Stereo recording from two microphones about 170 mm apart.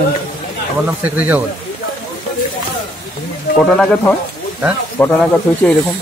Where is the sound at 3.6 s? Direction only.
5° left (ahead or behind).